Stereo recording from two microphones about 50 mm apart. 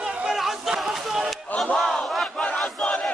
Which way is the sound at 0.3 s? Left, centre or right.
Centre.